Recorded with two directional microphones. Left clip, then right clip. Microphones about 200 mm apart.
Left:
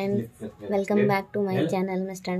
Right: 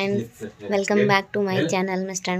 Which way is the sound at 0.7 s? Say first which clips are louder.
Right 4 dB; centre (ahead or behind).